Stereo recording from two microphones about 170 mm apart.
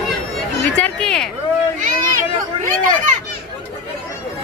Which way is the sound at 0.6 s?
5° left (ahead or behind).